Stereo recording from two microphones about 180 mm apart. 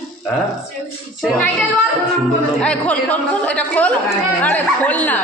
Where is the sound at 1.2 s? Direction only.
10° left (ahead or behind).